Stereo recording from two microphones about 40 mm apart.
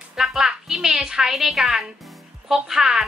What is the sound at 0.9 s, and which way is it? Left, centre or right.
A woman's voice, centre.